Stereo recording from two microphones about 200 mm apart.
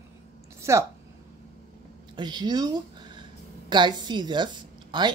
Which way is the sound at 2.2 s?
20° right (ahead or behind).